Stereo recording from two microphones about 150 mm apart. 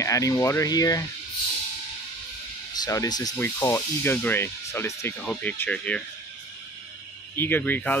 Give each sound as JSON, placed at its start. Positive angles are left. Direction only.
{"t": 0.0, "sound": "speech", "side_deg": 20}
{"t": 2.7, "sound": "speech", "side_deg": 25}
{"t": 7.3, "sound": "speech", "side_deg": 15}